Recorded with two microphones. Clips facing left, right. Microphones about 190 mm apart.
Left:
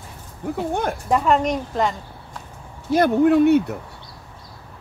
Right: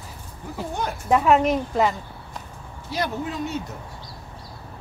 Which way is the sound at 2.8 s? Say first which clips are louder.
Left 12 dB; 50° left (ahead or behind).